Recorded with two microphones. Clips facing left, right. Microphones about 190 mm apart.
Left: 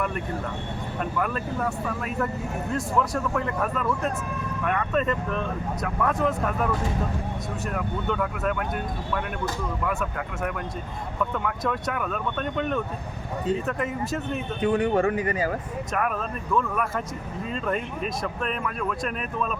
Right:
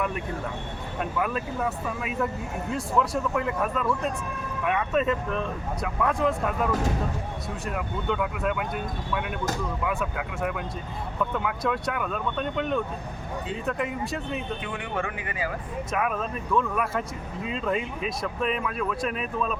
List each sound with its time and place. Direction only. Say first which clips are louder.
1.2 s speech: even; 5° right (ahead or behind)
14.6 s speech: left 10 dB; 40° left (ahead or behind)
15.9 s speech: even; centre (ahead or behind)